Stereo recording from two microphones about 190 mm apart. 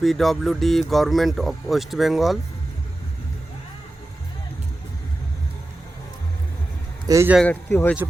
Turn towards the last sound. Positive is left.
turn(degrees=10)  # may be behind; listen again after turning